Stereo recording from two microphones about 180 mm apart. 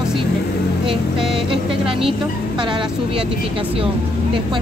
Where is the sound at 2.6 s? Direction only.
25° right (ahead or behind).